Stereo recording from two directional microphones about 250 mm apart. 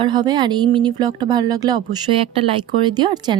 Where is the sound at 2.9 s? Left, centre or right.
Centre.